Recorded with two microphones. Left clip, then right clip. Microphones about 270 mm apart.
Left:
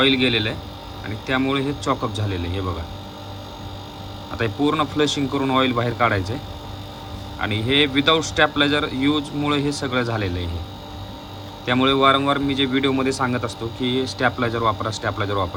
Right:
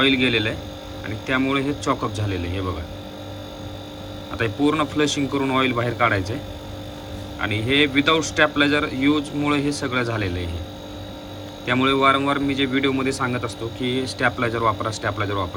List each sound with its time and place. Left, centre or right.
0.0 s a man's voice: centre
4.4 s a man's voice: centre
7.3 s a man's voice: centre
11.6 s a man's voice: centre